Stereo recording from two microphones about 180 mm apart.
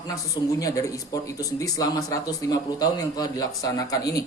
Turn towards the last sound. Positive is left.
turn(degrees=20)  # may be behind; listen again after turning